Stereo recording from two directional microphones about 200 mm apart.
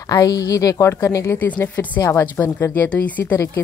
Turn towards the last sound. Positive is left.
turn(degrees=10)  # may be behind; listen again after turning